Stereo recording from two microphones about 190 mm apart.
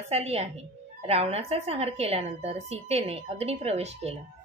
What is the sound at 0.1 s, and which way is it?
A woman's voice, 35° right (ahead or behind).